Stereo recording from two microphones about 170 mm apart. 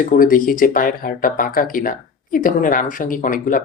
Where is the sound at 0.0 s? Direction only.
55° left (ahead or behind).